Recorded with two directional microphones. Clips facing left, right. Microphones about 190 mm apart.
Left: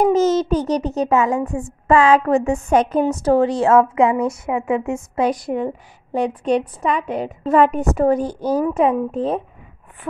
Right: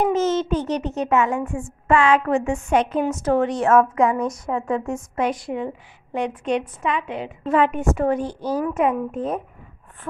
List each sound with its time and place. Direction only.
0.0 s a child's voice: 40° left (ahead or behind)
4.5 s a woman's voice: 5° left (ahead or behind)
5.1 s a child's voice: 35° left (ahead or behind)
8.6 s a child's voice: 35° left (ahead or behind)